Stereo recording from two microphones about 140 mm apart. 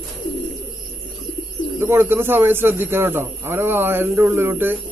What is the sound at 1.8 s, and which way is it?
A man's voice, 15° right (ahead or behind).